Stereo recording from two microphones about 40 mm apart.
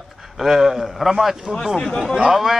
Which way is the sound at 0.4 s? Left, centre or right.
Centre.